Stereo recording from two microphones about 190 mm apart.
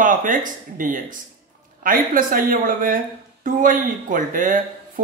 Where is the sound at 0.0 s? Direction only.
45° right (ahead or behind).